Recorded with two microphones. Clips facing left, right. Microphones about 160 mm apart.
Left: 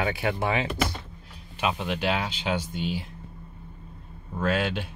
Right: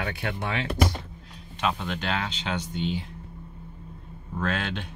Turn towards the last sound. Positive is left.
turn(degrees=5)  # may be behind; listen again after turning